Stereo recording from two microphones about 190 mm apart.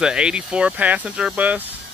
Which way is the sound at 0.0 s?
5° right (ahead or behind).